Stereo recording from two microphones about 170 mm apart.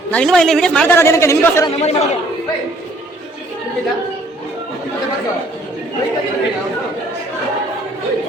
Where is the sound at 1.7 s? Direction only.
40° left (ahead or behind).